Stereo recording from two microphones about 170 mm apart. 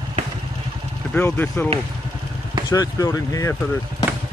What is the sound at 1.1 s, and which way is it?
Speech, 10° left (ahead or behind).